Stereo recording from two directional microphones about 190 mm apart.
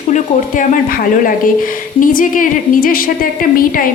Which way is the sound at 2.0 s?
45° left (ahead or behind).